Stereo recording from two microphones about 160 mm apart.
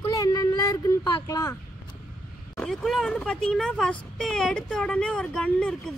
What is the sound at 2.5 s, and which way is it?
Speech, 5° left (ahead or behind).